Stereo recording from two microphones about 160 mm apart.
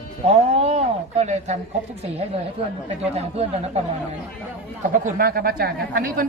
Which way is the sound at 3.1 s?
40° right (ahead or behind).